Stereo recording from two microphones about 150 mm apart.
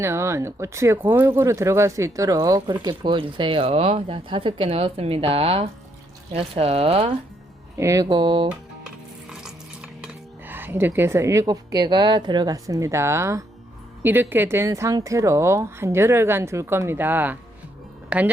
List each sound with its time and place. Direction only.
0.0 s speech: 20° right (ahead or behind); by 7.1 s 40° right (ahead or behind)
7.8 s speech: 20° right (ahead or behind)
10.0 s speech: 15° right (ahead or behind)